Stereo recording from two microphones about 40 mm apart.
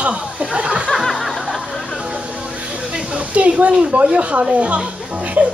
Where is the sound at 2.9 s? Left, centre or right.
Right.